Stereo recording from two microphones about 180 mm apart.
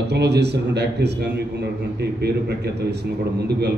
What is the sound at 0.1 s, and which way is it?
A man's voice, 70° right (ahead or behind).